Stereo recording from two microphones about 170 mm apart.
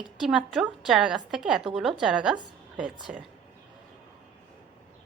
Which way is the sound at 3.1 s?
55° right (ahead or behind).